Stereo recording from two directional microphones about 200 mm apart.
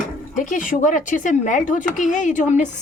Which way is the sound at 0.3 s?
40° left (ahead or behind).